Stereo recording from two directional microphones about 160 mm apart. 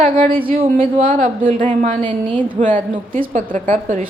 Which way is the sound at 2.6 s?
55° right (ahead or behind).